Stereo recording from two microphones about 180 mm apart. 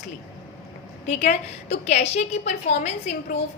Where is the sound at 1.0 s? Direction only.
40° left (ahead or behind).